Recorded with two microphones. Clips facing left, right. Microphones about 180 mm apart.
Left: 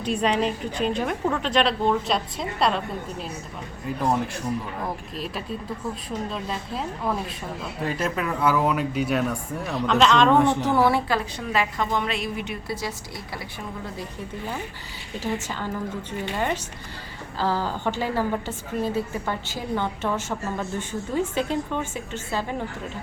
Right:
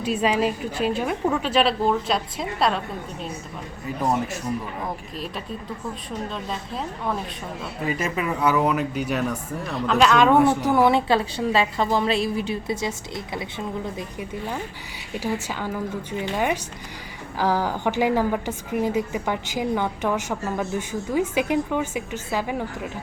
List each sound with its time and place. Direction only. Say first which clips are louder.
0.0 s a woman's voice: right 1 dB; 5° right (ahead or behind)
4.8 s a woman's voice: even; centre (ahead or behind); by 13.5 s 20° right (ahead or behind)
15.2 s a woman's voice: right 1 dB; 10° right (ahead or behind)